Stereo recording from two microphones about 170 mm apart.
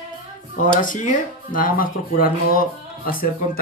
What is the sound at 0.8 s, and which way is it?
Speech, 50° left (ahead or behind).